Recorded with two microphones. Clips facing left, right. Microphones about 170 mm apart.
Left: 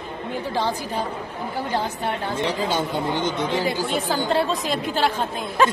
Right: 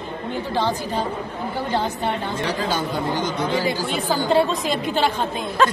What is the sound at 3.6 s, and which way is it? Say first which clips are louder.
A woman's voice: right 1 dB; centre (ahead or behind).